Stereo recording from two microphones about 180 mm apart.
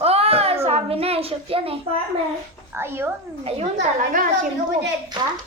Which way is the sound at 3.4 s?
35° right (ahead or behind).